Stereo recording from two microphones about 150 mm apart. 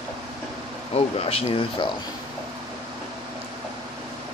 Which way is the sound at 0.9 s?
40° left (ahead or behind).